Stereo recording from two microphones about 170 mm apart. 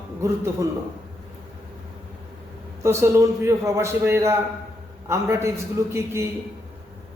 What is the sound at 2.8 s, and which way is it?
A man's voice, 15° right (ahead or behind).